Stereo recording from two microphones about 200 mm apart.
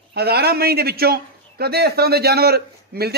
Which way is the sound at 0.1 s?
55° right (ahead or behind).